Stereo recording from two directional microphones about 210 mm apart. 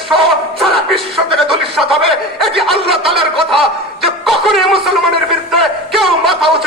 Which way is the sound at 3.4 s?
Centre (ahead or behind).